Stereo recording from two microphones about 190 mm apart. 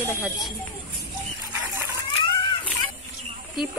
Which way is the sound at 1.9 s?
25° left (ahead or behind).